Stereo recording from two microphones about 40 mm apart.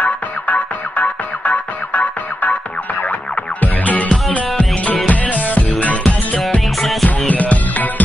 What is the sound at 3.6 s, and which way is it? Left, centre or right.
Music, left.